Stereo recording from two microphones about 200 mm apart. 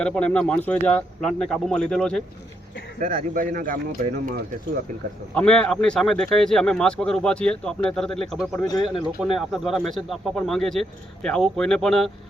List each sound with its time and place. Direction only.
0.0 s speech: 5° left (ahead or behind)
3.0 s speech: 45° right (ahead or behind)
5.3 s speech: 5° left (ahead or behind)